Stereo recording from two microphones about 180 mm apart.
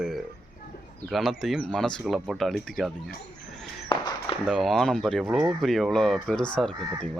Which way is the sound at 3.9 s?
25° left (ahead or behind).